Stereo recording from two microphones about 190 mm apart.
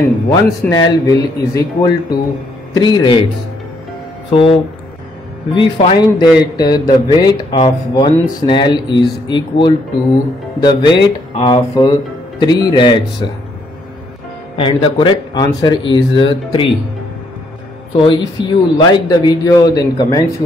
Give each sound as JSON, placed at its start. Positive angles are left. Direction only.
{"t": 0.3, "sound": "a man's voice", "side_deg": 20}
{"t": 5.5, "sound": "a man's voice", "side_deg": 30}
{"t": 14.6, "sound": "a man's voice", "side_deg": 25}
{"t": 17.9, "sound": "a man's voice", "side_deg": 25}